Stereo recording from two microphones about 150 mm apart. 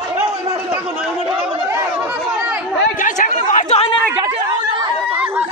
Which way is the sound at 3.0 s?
60° left (ahead or behind).